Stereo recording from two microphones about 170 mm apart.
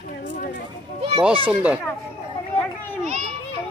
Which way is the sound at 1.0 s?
35° right (ahead or behind).